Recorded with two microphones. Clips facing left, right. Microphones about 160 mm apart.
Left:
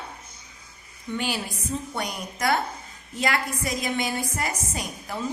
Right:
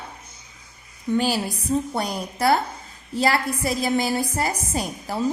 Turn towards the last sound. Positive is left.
turn(degrees=-35)  # may be behind; listen again after turning